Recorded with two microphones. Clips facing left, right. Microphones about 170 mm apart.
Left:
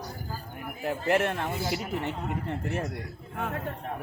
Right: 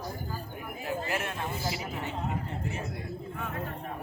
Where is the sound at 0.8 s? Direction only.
60° left (ahead or behind).